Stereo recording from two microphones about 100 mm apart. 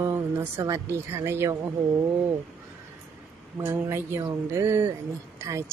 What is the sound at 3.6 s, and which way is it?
A woman's voice, 25° right (ahead or behind).